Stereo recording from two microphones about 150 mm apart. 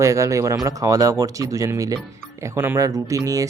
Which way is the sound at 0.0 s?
20° right (ahead or behind).